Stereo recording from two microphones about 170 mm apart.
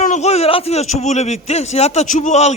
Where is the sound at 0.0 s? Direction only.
45° left (ahead or behind).